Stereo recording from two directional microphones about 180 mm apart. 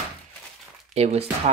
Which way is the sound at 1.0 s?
35° right (ahead or behind).